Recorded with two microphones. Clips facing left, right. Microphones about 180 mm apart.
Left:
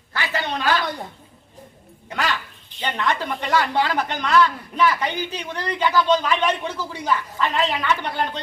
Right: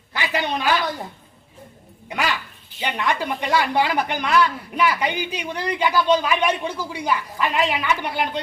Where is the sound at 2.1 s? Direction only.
10° right (ahead or behind).